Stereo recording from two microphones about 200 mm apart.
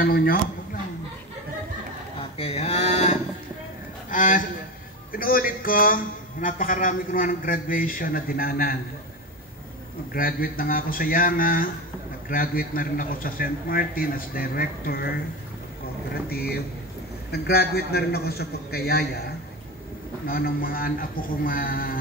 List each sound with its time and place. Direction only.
0.0 s a man's voice: 45° left (ahead or behind)
2.3 s livestock: 30° left (ahead or behind)
4.1 s a man's voice: 40° left (ahead or behind)
10.1 s a man's voice: 45° left (ahead or behind)
17.3 s a man's voice: 50° left (ahead or behind)
20.2 s a man's voice: 45° left (ahead or behind)